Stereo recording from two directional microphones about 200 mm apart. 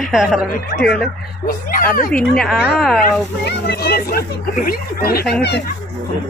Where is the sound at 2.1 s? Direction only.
Centre (ahead or behind).